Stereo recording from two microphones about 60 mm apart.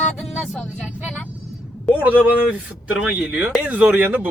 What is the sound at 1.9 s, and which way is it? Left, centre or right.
Speech, centre.